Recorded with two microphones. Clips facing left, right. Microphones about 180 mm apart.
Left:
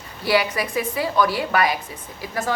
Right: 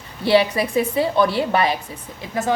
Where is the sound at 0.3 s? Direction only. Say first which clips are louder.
Right 4 dB; 30° right (ahead or behind).